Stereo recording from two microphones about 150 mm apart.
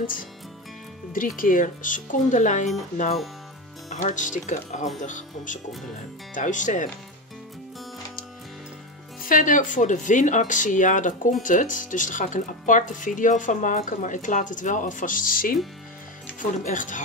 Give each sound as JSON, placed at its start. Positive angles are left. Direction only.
{"t": 1.1, "sound": "speech", "side_deg": 65}
{"t": 3.9, "sound": "speech", "side_deg": 55}
{"t": 9.2, "sound": "speech", "side_deg": 60}